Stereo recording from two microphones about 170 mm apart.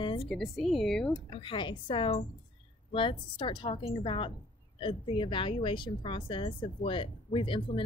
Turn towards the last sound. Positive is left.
turn(degrees=30)  # may be behind; listen again after turning